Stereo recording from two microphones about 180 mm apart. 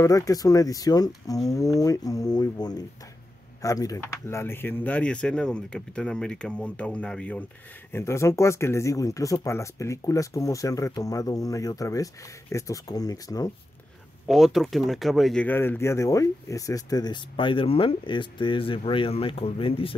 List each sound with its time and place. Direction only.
0.0 s speech: 20° left (ahead or behind)
14.2 s speech: centre (ahead or behind); by 20.0 s 30° left (ahead or behind)